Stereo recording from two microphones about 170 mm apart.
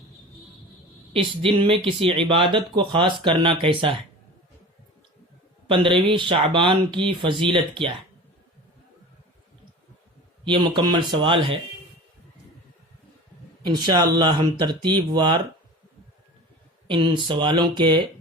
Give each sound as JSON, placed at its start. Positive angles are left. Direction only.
{"t": 1.1, "sound": "speech", "side_deg": -30}
{"t": 5.6, "sound": "speech", "side_deg": -30}
{"t": 10.4, "sound": "speech", "side_deg": -30}
{"t": 13.8, "sound": "speech", "side_deg": -25}
{"t": 16.8, "sound": "speech", "side_deg": -30}